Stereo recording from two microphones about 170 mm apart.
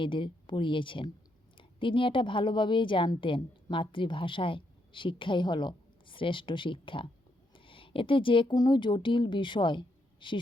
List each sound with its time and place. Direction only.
0.0 s a woman's voice: 30° left (ahead or behind)